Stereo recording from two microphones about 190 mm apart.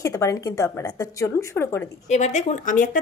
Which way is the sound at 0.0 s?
15° left (ahead or behind).